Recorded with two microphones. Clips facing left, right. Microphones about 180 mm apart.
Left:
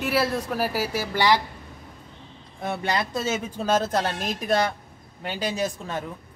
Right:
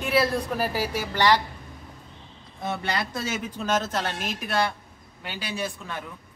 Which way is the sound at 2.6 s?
20° left (ahead or behind).